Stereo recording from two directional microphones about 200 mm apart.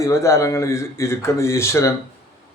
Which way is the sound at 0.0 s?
15° left (ahead or behind).